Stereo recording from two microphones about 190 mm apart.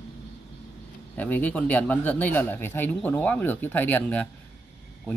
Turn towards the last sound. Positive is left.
turn(degrees=10)  # may be behind; listen again after turning